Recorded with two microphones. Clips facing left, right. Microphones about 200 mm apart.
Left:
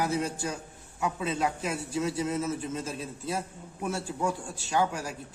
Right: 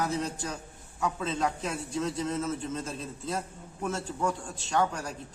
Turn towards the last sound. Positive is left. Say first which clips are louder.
# even
turn(degrees=5)  # may be behind; listen again after turning